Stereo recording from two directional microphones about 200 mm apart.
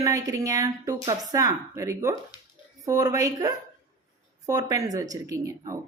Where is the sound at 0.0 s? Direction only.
15° right (ahead or behind).